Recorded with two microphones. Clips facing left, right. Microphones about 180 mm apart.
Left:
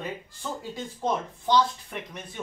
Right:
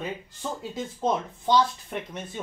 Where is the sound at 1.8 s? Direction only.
20° right (ahead or behind).